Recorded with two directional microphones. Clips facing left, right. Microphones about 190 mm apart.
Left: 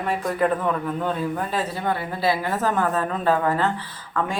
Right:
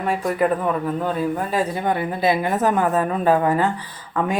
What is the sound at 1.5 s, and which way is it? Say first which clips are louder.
A woman's voice: right 4 dB; 15° right (ahead or behind).